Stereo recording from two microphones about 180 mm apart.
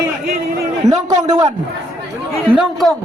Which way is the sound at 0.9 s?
20° right (ahead or behind).